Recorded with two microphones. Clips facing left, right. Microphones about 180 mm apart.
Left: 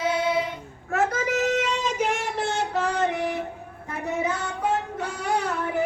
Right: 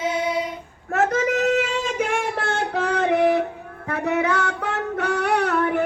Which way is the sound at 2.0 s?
55° right (ahead or behind).